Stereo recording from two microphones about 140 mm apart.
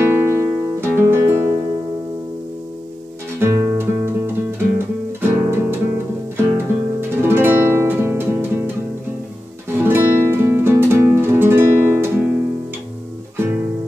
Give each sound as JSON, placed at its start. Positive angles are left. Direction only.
{"t": 0.0, "sound": "music", "side_deg": -15}
{"t": 3.3, "sound": "music", "side_deg": -20}
{"t": 9.8, "sound": "music", "side_deg": -15}
{"t": 13.4, "sound": "music", "side_deg": -15}